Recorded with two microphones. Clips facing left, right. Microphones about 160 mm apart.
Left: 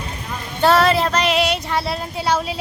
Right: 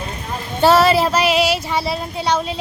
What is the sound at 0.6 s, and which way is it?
Speech, 5° right (ahead or behind).